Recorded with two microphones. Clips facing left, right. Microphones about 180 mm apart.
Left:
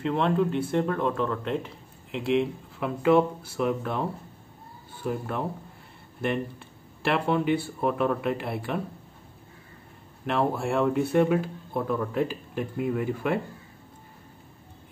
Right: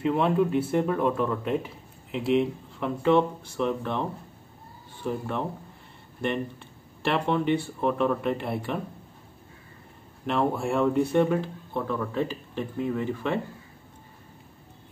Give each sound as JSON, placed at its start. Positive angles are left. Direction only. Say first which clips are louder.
{"t": 0.0, "sound": "speech", "louder": "right 1 dB", "side_deg": -5}
{"t": 10.2, "sound": "a man's voice", "louder": "even", "side_deg": 0}